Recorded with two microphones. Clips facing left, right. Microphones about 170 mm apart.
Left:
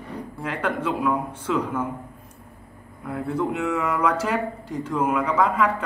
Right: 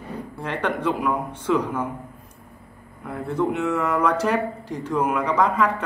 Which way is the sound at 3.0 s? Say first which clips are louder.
Right 1 dB; centre (ahead or behind).